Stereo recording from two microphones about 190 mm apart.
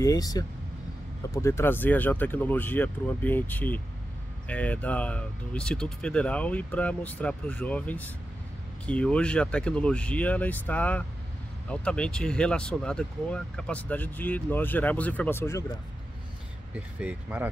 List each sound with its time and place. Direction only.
0.0 s speech: 20° left (ahead or behind)
17.0 s speech: 10° right (ahead or behind)